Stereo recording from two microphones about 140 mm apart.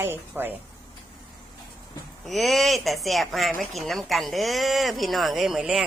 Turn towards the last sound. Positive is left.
turn(degrees=-5)  # may be behind; listen again after turning